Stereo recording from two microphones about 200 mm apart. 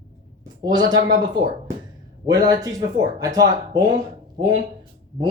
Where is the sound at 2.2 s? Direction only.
20° right (ahead or behind).